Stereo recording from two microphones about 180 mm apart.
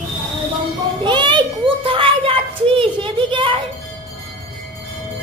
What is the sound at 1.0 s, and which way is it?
Children playing, 25° right (ahead or behind).